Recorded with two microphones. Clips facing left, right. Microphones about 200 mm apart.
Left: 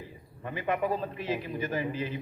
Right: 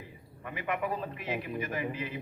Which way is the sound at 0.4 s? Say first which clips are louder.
Left 4 dB; 30° left (ahead or behind).